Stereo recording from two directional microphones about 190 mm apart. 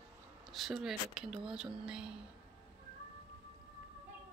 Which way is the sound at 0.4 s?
Centre (ahead or behind).